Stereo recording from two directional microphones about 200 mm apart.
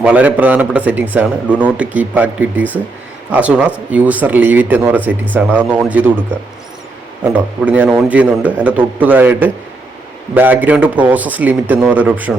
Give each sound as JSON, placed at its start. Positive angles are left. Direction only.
{"t": 0.0, "sound": "a man's voice", "side_deg": -5}
{"t": 7.3, "sound": "a man's voice", "side_deg": -10}